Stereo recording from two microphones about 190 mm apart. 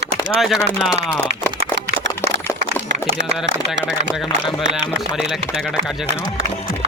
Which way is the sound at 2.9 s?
70° right (ahead or behind).